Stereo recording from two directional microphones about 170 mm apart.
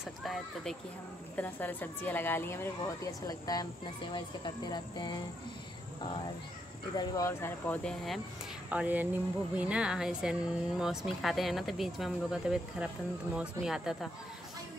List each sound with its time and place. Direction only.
0.2 s speech: centre (ahead or behind)
1.3 s speech: 10° left (ahead or behind)
4.6 s cricket: 25° left (ahead or behind)
7.0 s speech: 15° left (ahead or behind); by 8.2 s centre (ahead or behind)
8.6 s speech: 10° right (ahead or behind)